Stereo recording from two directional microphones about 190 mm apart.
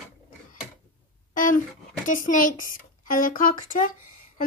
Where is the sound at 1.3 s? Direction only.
45° left (ahead or behind).